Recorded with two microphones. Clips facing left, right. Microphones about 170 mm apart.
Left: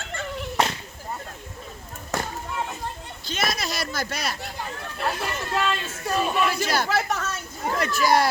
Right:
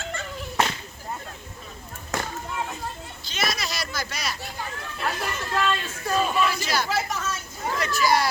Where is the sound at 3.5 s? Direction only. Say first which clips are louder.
Left 2 dB; 55° left (ahead or behind).